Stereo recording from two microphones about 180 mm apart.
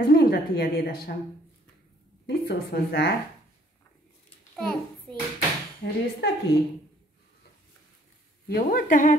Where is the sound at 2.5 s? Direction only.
60° left (ahead or behind).